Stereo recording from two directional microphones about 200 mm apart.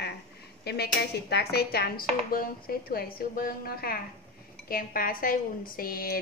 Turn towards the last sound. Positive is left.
turn(degrees=45)  # may be behind; listen again after turning